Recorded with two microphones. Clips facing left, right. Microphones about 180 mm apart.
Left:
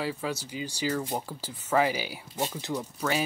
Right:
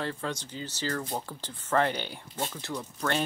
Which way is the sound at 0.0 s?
5° left (ahead or behind).